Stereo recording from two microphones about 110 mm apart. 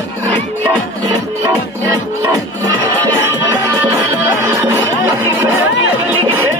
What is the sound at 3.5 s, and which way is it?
Music, 35° right (ahead or behind).